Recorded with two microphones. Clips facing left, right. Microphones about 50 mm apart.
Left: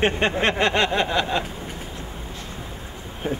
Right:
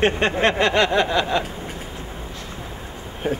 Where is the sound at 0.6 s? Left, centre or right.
Left.